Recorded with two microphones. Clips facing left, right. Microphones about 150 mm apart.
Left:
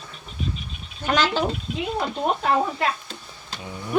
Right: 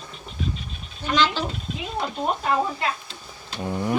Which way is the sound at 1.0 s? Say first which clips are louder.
Left 1 dB; 50° left (ahead or behind).